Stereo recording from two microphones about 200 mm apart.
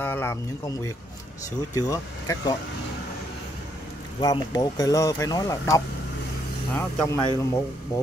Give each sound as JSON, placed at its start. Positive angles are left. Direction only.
{"t": 0.0, "sound": "speech", "side_deg": 10}
{"t": 4.2, "sound": "speech", "side_deg": 20}